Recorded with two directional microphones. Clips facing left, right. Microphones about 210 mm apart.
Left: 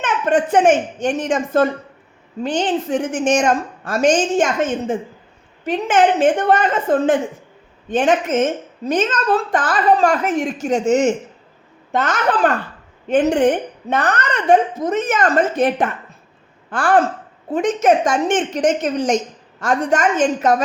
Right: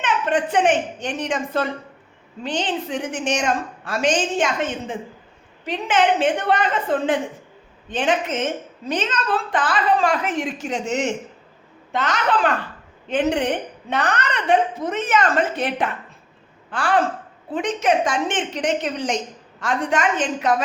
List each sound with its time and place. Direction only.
0.0 s a woman's voice: 45° left (ahead or behind)